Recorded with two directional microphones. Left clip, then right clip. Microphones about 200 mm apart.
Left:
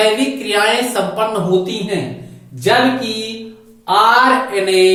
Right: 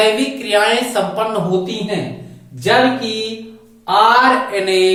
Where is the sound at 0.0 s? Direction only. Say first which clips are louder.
Even; 20° right (ahead or behind).